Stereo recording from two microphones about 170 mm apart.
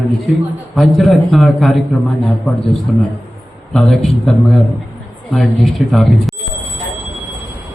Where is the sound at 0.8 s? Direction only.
Centre (ahead or behind).